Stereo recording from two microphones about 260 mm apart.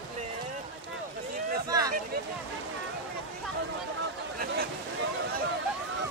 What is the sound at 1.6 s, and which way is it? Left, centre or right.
Vehicle, centre.